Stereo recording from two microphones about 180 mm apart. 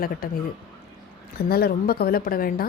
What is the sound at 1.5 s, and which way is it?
Speech, 60° left (ahead or behind).